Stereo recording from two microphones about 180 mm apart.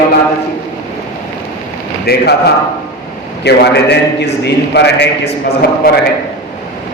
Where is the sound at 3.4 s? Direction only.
65° left (ahead or behind).